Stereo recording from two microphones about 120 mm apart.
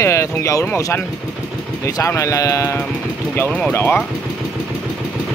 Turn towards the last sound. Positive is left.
turn(degrees=15)  # may be behind; listen again after turning